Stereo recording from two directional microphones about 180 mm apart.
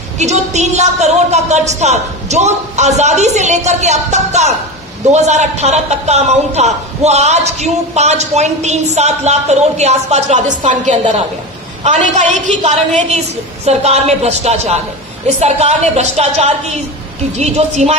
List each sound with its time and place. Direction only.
0.2 s a man's voice: 40° right (ahead or behind)
12.3 s a man's voice: 40° right (ahead or behind)